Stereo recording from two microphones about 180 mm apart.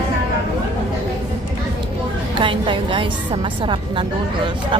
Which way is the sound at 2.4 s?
30° right (ahead or behind).